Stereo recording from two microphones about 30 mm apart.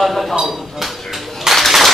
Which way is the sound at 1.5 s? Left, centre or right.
Centre.